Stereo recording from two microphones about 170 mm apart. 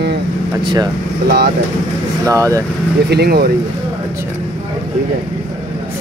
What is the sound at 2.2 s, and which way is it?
Speech, 20° right (ahead or behind).